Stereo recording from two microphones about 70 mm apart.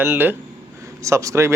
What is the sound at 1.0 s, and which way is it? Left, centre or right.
Speech, right.